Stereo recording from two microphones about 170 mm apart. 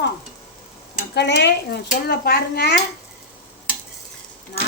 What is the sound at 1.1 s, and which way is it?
Stir, 85° left.